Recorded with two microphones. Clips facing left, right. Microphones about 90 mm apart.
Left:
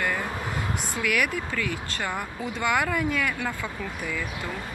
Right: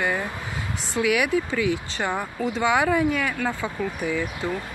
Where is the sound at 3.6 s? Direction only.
15° right (ahead or behind).